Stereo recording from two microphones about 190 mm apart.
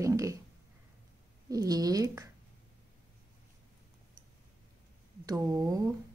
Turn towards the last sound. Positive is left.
turn(degrees=-20)  # may be behind; listen again after turning